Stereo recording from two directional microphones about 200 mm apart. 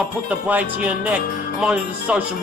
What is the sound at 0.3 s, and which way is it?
Speech, 5° right (ahead or behind).